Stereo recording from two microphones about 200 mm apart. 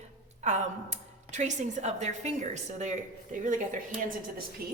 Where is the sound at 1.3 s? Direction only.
35° right (ahead or behind).